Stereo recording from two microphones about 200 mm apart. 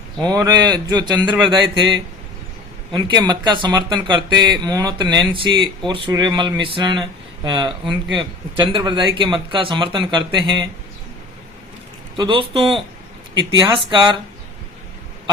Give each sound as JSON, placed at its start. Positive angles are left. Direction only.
{"t": 0.2, "sound": "speech", "side_deg": -20}
{"t": 12.1, "sound": "speech", "side_deg": -20}